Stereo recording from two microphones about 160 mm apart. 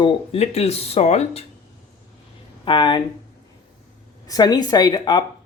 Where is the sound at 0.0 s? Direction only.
40° left (ahead or behind).